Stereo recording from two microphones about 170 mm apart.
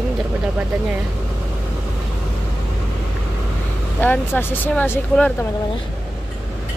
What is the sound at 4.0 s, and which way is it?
Speech, 10° left (ahead or behind).